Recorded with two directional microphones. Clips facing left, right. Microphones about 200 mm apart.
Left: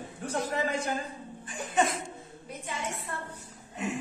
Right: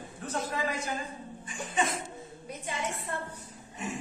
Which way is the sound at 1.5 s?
65° left (ahead or behind).